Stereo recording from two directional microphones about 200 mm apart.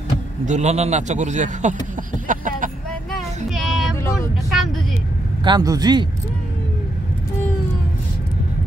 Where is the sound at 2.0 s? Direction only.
40° right (ahead or behind).